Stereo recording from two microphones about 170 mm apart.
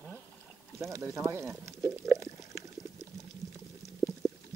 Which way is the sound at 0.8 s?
15° right (ahead or behind).